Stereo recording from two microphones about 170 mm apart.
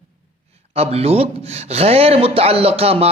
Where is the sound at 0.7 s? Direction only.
35° right (ahead or behind).